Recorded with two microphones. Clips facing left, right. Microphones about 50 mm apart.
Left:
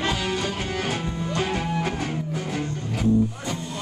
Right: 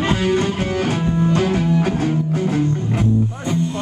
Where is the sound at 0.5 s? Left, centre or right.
Right.